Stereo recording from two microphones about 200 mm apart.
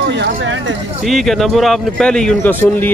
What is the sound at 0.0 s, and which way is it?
Speech, 60° right (ahead or behind).